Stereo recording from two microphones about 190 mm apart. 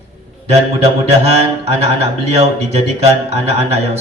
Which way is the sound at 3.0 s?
35° right (ahead or behind).